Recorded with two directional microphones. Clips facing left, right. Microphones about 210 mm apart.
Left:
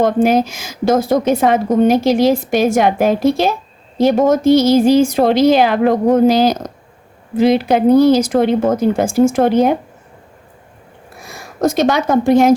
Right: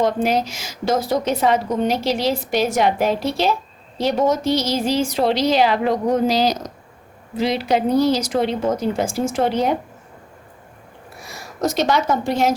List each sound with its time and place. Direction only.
0.0 s a woman's voice: 50° left (ahead or behind)
11.2 s speech: 50° left (ahead or behind)